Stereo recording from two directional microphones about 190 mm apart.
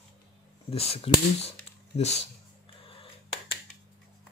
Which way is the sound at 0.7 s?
30° left (ahead or behind).